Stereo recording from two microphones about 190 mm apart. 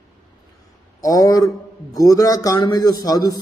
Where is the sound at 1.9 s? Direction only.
20° left (ahead or behind).